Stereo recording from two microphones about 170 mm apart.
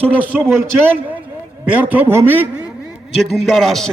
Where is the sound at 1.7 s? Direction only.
10° right (ahead or behind).